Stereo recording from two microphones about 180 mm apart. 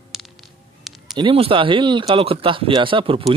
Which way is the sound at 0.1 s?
Centre (ahead or behind).